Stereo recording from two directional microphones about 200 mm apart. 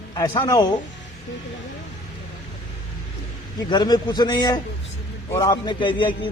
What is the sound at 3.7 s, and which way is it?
A man's voice, 20° left (ahead or behind).